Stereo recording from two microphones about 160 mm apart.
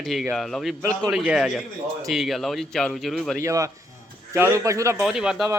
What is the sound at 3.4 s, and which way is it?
A man's voice, 20° right (ahead or behind).